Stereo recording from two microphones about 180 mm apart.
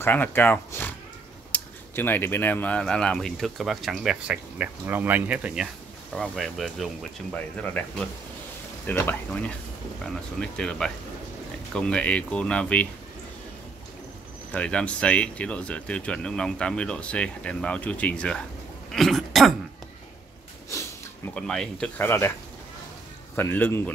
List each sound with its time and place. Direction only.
0.0 s speech: 10° left (ahead or behind)
14.5 s speech: 5° left (ahead or behind)
20.7 s a sound: 15° left (ahead or behind)
21.3 s speech: 5° left (ahead or behind)
23.3 s speech: 10° left (ahead or behind)